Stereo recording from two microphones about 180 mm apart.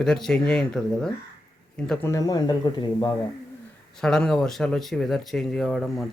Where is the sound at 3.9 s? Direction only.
5° left (ahead or behind).